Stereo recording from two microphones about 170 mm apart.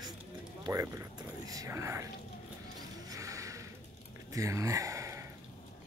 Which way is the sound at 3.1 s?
20° right (ahead or behind).